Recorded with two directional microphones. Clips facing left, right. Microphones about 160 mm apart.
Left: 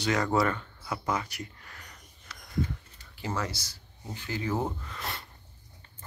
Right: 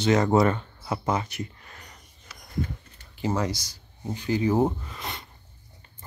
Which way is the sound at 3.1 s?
20° right (ahead or behind).